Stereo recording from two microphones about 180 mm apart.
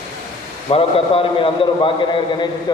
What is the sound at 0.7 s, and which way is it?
A man's voice, 30° left (ahead or behind).